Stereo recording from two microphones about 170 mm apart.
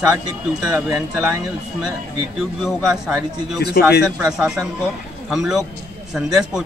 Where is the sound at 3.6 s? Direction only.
70° left (ahead or behind).